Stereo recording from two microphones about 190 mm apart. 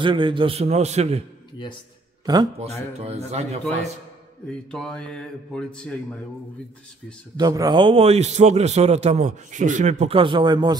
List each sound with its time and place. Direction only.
0.0 s a man's voice: 25° right (ahead or behind)
2.3 s speech: 20° right (ahead or behind)
3.0 s a man's voice: 35° right (ahead or behind)
4.5 s speech: 5° left (ahead or behind)
7.3 s a man's voice: 20° right (ahead or behind)